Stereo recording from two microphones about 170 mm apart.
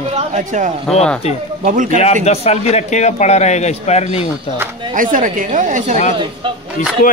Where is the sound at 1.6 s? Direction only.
50° right (ahead or behind).